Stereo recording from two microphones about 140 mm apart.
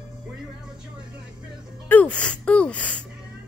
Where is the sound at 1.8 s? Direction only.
10° left (ahead or behind).